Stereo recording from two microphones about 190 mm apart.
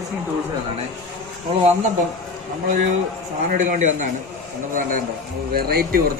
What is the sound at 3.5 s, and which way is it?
A man's voice, 40° right (ahead or behind).